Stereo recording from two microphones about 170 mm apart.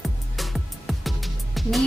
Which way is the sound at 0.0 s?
Centre (ahead or behind).